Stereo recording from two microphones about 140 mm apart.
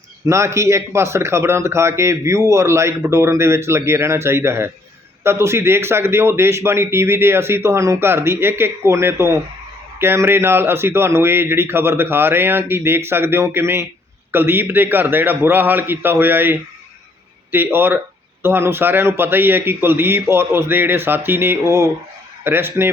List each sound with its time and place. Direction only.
0.3 s a man's voice: 20° right (ahead or behind)